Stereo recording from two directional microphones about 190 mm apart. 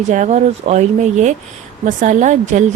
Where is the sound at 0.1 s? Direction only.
40° right (ahead or behind).